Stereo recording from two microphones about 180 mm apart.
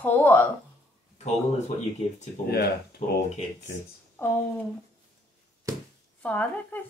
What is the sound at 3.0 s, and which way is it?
Speech, 40° left (ahead or behind).